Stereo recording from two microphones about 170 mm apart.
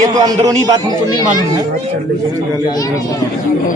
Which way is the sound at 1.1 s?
25° left (ahead or behind).